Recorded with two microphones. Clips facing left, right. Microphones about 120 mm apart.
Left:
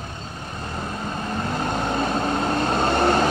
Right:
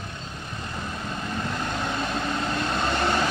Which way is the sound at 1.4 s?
45° left (ahead or behind).